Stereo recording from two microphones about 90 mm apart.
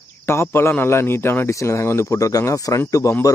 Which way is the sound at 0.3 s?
25° left (ahead or behind).